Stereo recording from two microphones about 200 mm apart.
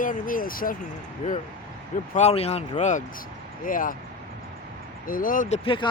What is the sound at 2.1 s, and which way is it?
Speech, 30° left (ahead or behind).